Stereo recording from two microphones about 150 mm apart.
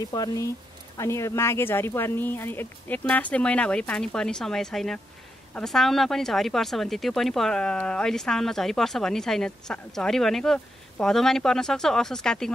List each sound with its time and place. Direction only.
0.1 s speech: 25° left (ahead or behind); by 12.5 s 5° left (ahead or behind)